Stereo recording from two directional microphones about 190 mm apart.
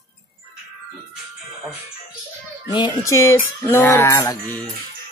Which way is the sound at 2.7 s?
20° left (ahead or behind).